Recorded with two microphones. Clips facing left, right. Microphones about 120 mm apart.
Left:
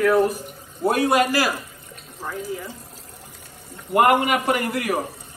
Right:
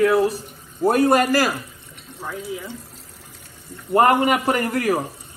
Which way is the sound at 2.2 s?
Centre (ahead or behind).